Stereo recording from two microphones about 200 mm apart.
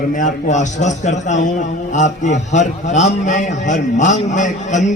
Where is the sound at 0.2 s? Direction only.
35° left (ahead or behind).